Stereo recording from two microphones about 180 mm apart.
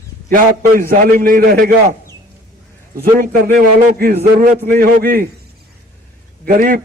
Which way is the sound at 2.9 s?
55° right (ahead or behind).